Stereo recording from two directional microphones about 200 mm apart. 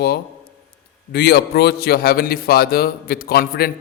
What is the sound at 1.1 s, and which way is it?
A man's voice, 50° left (ahead or behind).